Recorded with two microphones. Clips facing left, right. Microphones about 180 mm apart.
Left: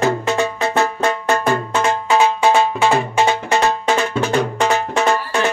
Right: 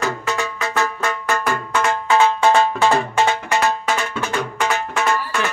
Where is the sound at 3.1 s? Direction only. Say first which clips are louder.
Left 2 dB; 20° left (ahead or behind).